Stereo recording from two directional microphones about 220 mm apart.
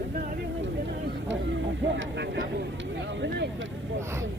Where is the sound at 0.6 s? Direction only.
55° right (ahead or behind).